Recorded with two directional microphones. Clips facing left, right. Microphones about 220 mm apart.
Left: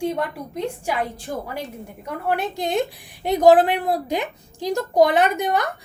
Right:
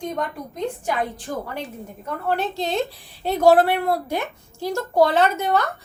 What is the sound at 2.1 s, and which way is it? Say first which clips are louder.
A woman's voice: even; 15° left (ahead or behind).